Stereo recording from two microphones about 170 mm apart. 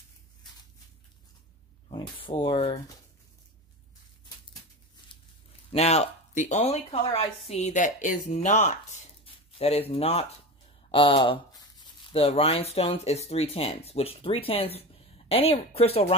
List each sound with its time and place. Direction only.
1.9 s speech: 30° left (ahead or behind)
5.7 s speech: 40° left (ahead or behind)